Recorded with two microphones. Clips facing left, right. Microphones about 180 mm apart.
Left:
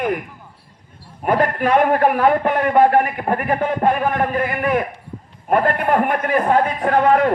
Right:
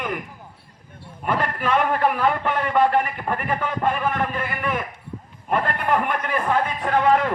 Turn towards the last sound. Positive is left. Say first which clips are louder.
# left 4 dB
turn(degrees=45)  # may be behind; listen again after turning